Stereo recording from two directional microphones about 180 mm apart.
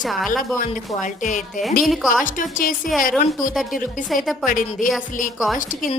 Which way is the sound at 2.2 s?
50° left (ahead or behind).